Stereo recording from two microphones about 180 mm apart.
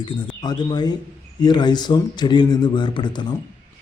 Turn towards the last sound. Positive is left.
turn(degrees=25)  # may be behind; listen again after turning